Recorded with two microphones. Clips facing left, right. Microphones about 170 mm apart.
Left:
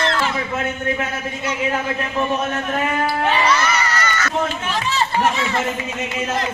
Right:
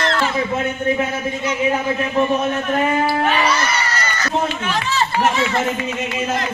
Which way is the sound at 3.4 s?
30° right (ahead or behind).